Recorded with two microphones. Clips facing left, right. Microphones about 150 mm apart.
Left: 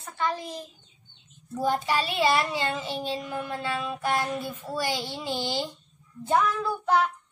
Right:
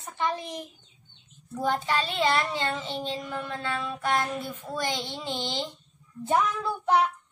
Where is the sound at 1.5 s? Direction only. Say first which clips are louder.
Left 1 dB; 10° left (ahead or behind).